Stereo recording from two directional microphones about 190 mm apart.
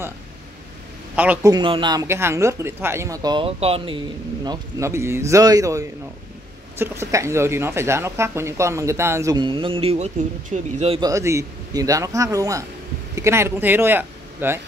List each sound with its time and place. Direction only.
1.1 s speech: 10° right (ahead or behind)
1.5 s speech: 25° right (ahead or behind)
4.5 s speech: 15° right (ahead or behind); by 11.0 s 35° right (ahead or behind)
11.0 s speech: 15° right (ahead or behind)